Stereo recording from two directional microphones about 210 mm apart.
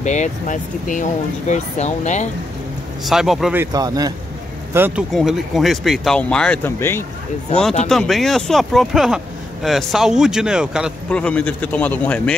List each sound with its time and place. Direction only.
0.0 s speech: 35° left (ahead or behind)
3.1 s speech: centre (ahead or behind)
3.7 s speech: 20° right (ahead or behind); by 7.1 s 10° left (ahead or behind)
7.9 s speech: centre (ahead or behind)